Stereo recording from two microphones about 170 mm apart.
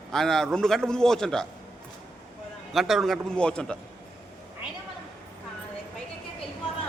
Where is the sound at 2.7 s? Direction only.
Centre (ahead or behind).